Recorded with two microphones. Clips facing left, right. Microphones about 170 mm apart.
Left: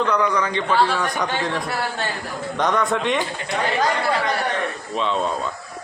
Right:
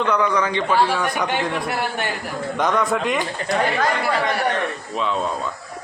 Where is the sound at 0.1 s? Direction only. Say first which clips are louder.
Right 1 dB; 10° right (ahead or behind).